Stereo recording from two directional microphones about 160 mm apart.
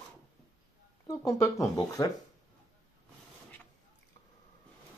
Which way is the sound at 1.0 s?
20° left (ahead or behind).